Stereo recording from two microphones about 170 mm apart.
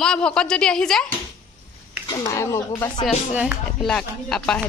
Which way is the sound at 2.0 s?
20° left (ahead or behind).